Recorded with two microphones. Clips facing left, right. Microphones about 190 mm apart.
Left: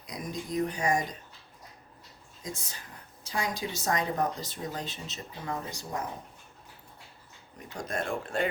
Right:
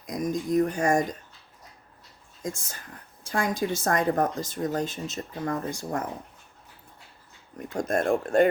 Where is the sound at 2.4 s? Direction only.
50° right (ahead or behind).